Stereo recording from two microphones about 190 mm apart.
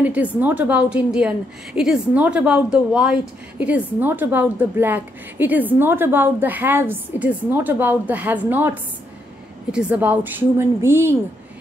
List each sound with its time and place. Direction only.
0.0 s a woman's voice: 10° right (ahead or behind)